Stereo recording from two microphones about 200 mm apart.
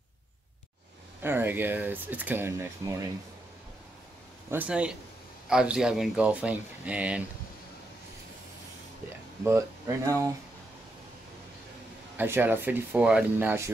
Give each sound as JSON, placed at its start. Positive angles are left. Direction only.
{"t": 1.2, "sound": "speech", "side_deg": -10}
{"t": 4.5, "sound": "speech", "side_deg": -5}
{"t": 9.4, "sound": "speech", "side_deg": -15}
{"t": 12.2, "sound": "speech", "side_deg": -10}